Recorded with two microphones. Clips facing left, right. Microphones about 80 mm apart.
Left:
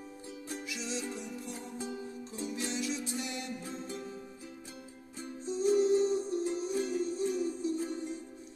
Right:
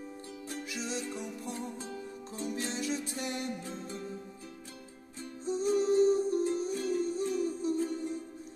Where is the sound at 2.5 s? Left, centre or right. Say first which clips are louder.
Right 1 dB; right.